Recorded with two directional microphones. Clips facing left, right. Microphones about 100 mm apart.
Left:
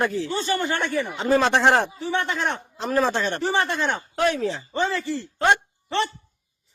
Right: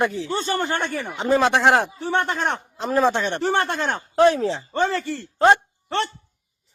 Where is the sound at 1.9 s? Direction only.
50° right (ahead or behind).